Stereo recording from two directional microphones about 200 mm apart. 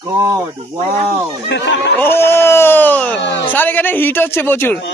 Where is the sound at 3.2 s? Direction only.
60° left (ahead or behind).